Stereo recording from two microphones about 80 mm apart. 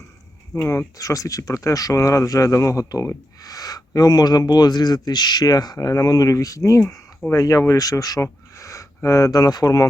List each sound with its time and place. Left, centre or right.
0.5 s speech: left